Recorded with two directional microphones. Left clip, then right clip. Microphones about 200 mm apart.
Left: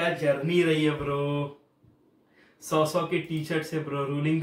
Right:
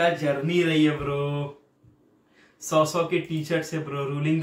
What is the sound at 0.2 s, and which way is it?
Speech, 5° right (ahead or behind).